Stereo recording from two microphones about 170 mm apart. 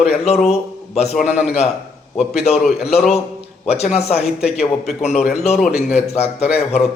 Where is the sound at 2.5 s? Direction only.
40° left (ahead or behind).